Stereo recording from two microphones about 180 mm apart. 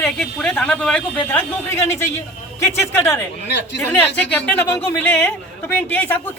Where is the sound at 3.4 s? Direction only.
70° left (ahead or behind).